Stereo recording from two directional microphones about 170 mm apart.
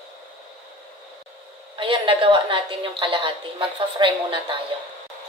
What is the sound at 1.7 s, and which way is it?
A woman's voice, 30° right (ahead or behind).